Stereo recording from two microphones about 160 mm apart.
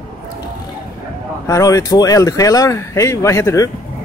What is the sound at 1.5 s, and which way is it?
Speech, 20° left (ahead or behind).